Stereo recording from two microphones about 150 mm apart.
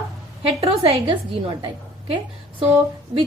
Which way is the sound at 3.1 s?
35° right (ahead or behind).